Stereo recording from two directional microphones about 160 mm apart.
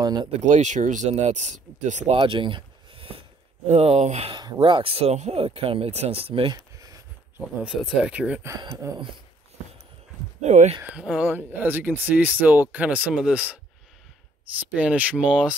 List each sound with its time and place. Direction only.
0.0 s speech: 25° right (ahead or behind)
0.3 s speech: 45° right (ahead or behind)
4.3 s speech: 30° right (ahead or behind)
8.0 s speech: 5° right (ahead or behind)
8.5 s speech: 20° right (ahead or behind)
10.4 s speech: 45° right (ahead or behind)
10.8 s speech: 5° right (ahead or behind)